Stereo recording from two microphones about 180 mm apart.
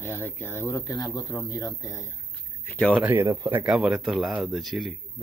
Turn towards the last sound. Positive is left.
turn(degrees=0)  # may be behind; listen again after turning